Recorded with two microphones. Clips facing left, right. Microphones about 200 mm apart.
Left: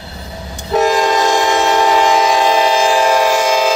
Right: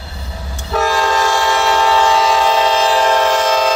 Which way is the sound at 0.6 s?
20° left (ahead or behind).